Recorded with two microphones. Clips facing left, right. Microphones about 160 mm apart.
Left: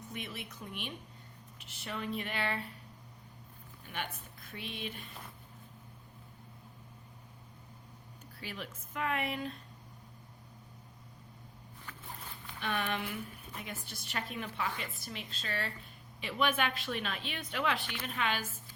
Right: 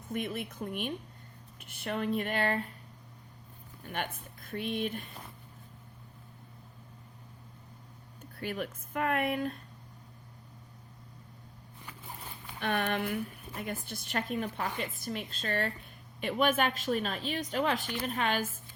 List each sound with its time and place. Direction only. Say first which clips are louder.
0.1 s speech: right 10 dB; 50° right (ahead or behind)
3.8 s speech: right 5 dB; 50° right (ahead or behind)
8.4 s speech: right 8 dB; 55° right (ahead or behind)
12.5 s speech: right 5 dB; 50° right (ahead or behind)